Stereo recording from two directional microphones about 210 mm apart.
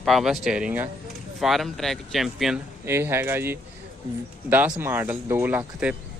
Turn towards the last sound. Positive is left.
turn(degrees=-5)  # may be behind; listen again after turning